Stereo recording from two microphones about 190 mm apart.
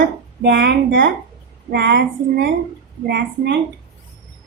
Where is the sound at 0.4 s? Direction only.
70° right (ahead or behind).